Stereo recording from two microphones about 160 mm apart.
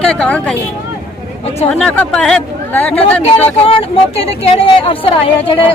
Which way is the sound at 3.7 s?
35° left (ahead or behind).